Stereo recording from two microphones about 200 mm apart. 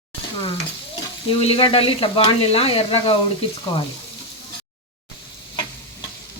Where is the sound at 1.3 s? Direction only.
25° left (ahead or behind).